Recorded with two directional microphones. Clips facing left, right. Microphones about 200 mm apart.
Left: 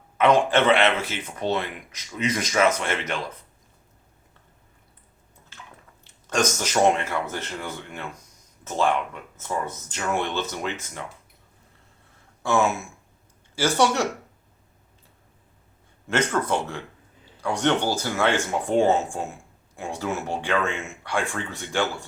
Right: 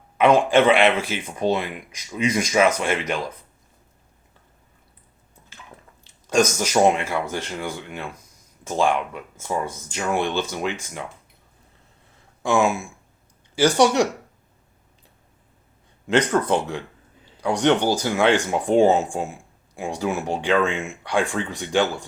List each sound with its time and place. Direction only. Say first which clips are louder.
0.2 s speech: right 3 dB; 10° right (ahead or behind)
6.2 s speech: right 5 dB; 10° right (ahead or behind)
12.4 s a sound: right 2 dB; 15° right (ahead or behind)
13.6 s speech: right 5 dB; 15° right (ahead or behind)
16.0 s speech: right 4 dB; 15° right (ahead or behind)